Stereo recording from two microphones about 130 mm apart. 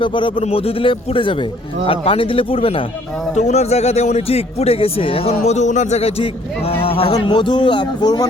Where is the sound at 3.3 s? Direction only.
60° left (ahead or behind); by 8.3 s 35° left (ahead or behind).